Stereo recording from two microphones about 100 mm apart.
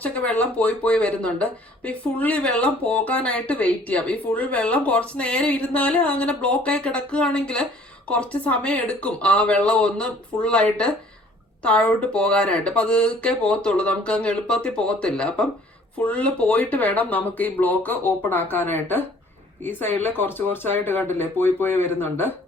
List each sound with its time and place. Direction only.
0.0 s speech: 15° left (ahead or behind)